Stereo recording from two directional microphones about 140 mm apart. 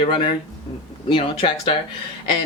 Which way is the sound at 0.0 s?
40° left (ahead or behind).